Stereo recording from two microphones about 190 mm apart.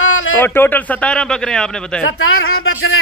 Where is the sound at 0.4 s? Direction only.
10° left (ahead or behind).